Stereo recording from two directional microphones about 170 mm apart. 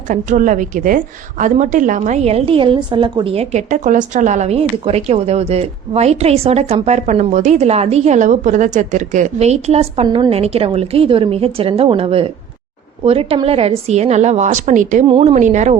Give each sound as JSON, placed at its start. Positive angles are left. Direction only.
{"t": 0.1, "sound": "a woman's voice", "side_deg": -50}
{"t": 15.0, "sound": "a woman's voice", "side_deg": -35}